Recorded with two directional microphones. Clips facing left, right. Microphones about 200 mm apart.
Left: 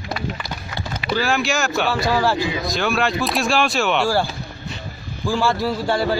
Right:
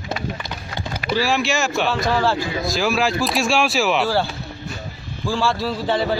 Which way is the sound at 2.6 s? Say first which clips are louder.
Right 4 dB; centre (ahead or behind).